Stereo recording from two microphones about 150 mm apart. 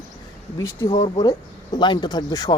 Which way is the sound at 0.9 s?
40° left (ahead or behind).